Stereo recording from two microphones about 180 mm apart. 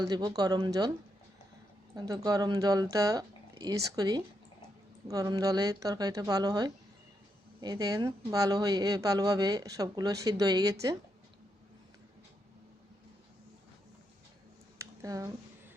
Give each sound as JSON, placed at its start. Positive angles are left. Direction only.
{"t": 0.0, "sound": "a woman's voice", "side_deg": -20}
{"t": 2.0, "sound": "a woman's voice", "side_deg": -20}
{"t": 14.8, "sound": "a sound", "side_deg": -20}